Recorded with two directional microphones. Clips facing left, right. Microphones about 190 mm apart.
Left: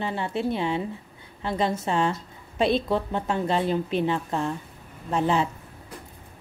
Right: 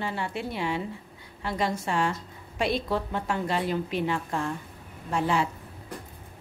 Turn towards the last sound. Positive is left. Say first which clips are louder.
# left 3 dB
turn(degrees=25)  # may be behind; listen again after turning